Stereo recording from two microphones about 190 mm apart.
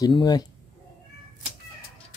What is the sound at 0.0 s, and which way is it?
Speech, 20° left (ahead or behind).